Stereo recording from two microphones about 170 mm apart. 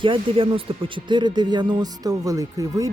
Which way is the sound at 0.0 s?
30° right (ahead or behind).